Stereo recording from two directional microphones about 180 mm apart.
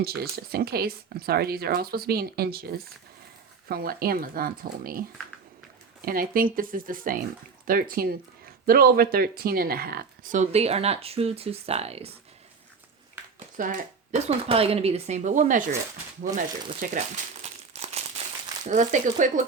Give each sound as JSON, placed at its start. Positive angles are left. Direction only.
{"t": 0.0, "sound": "speech", "side_deg": -60}
{"t": 6.1, "sound": "speech", "side_deg": -50}
{"t": 13.6, "sound": "speech", "side_deg": -45}
{"t": 16.8, "sound": "speech", "side_deg": -50}
{"t": 17.4, "sound": "crumpling", "side_deg": -35}
{"t": 18.7, "sound": "speech", "side_deg": -40}